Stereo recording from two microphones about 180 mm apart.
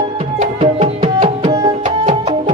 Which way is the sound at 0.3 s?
35° right (ahead or behind).